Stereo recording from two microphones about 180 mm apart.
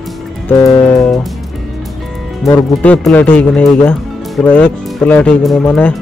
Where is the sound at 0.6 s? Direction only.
20° left (ahead or behind).